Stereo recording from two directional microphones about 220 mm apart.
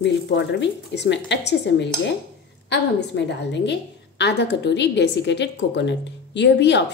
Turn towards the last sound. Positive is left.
turn(degrees=50)  # may be behind; listen again after turning